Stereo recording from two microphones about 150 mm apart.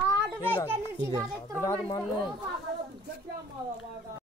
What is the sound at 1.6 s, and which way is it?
Speech, 20° left (ahead or behind).